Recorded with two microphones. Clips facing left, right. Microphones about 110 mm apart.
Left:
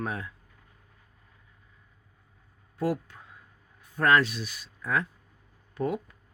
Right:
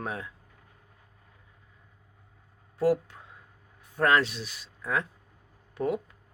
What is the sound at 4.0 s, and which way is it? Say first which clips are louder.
Speech: left 1 dB; 25° right (ahead or behind).